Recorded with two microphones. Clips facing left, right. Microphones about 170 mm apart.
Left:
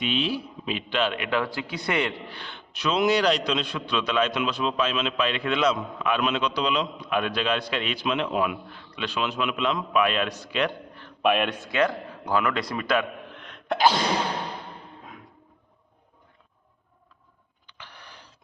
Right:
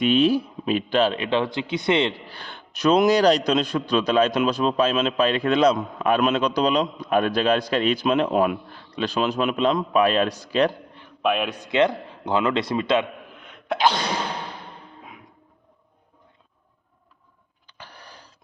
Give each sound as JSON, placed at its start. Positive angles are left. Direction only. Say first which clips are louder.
{"t": 0.0, "sound": "a man's voice", "louder": "right 9 dB", "side_deg": -45}
{"t": 2.3, "sound": "a man's voice", "louder": "right 1 dB", "side_deg": -40}
{"t": 11.2, "sound": "a man's voice", "louder": "even", "side_deg": 0}
{"t": 11.6, "sound": "a man's voice", "louder": "right 4 dB", "side_deg": -20}
{"t": 13.3, "sound": "sneeze", "louder": "right 2 dB", "side_deg": -5}
{"t": 17.7, "sound": "a sound", "louder": "right 3 dB", "side_deg": -40}